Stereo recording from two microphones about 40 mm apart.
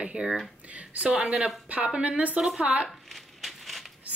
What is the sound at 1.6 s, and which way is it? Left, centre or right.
Speech, right.